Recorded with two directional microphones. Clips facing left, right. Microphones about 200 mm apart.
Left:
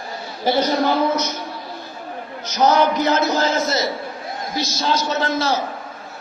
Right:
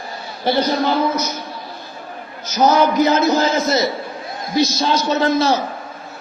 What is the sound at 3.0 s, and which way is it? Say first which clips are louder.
A man's voice: right 3 dB; 15° right (ahead or behind).